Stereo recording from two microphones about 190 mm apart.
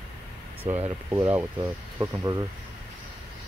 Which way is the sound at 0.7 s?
40° right (ahead or behind).